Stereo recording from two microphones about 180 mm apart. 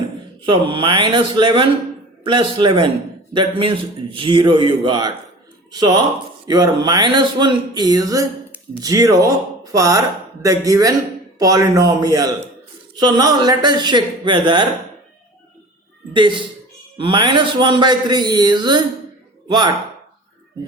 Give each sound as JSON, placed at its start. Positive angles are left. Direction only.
{"t": 0.4, "sound": "a man's voice", "side_deg": -25}
{"t": 16.1, "sound": "a man's voice", "side_deg": -25}